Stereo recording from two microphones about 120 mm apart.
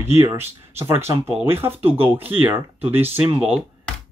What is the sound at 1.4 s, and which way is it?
Speech, 20° right (ahead or behind).